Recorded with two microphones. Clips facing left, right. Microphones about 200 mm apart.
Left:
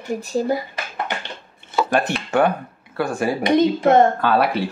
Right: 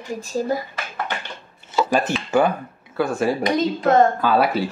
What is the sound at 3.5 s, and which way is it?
Speech, 25° left (ahead or behind).